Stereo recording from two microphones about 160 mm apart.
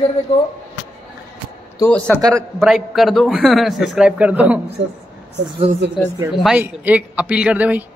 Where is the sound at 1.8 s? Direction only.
10° left (ahead or behind); by 4.6 s 10° right (ahead or behind).